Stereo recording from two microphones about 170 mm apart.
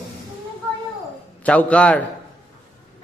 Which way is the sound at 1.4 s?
10° left (ahead or behind).